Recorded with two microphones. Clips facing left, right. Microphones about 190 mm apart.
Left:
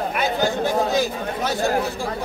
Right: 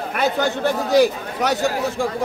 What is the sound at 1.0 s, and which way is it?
Speech, 75° right (ahead or behind).